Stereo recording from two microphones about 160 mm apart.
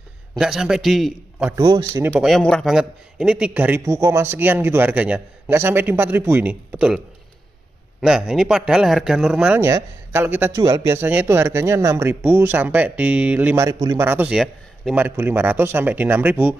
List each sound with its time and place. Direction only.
0.4 s a man's voice: 5° right (ahead or behind)
1.6 s a man's voice: 20° right (ahead or behind)
2.2 s a man's voice: 5° left (ahead or behind)
8.0 s a man's voice: 5° right (ahead or behind)
9.6 s a man's voice: 20° right (ahead or behind)
13.7 s a man's voice: 25° right (ahead or behind)
14.0 s a man's voice: 10° right (ahead or behind)
15.0 s a man's voice: 10° right (ahead or behind)